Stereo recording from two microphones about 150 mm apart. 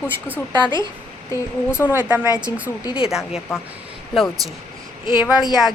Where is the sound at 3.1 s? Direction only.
5° right (ahead or behind).